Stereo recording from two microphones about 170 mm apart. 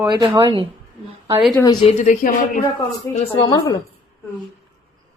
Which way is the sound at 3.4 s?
25° left (ahead or behind).